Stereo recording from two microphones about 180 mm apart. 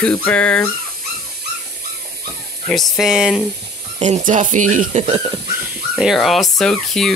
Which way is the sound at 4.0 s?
45° right (ahead or behind).